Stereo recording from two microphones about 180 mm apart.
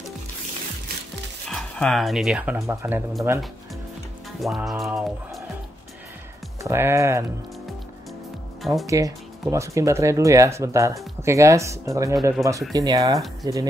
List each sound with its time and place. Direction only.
1.5 s speech: centre (ahead or behind)
4.4 s speech: centre (ahead or behind)
6.6 s speech: 15° right (ahead or behind)
8.8 s speech: 20° right (ahead or behind)